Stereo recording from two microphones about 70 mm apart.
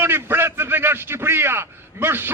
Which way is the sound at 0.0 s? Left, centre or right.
Right.